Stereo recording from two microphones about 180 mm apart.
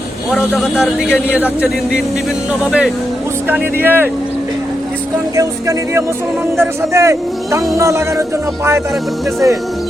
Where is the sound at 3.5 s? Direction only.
10° right (ahead or behind).